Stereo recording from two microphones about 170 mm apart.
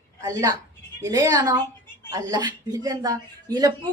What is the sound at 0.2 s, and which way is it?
A woman's voice, 20° right (ahead or behind).